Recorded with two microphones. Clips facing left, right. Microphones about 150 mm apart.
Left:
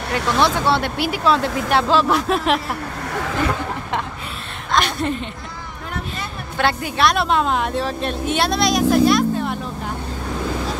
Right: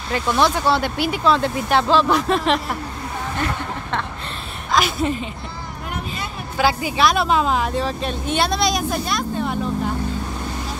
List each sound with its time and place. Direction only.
0.1 s speech: 80° left
0.6 s a woman's voice: centre (ahead or behind)
4.7 s a woman's voice: centre (ahead or behind)
6.6 s a woman's voice: centre (ahead or behind)
8.9 s vehicle: centre (ahead or behind)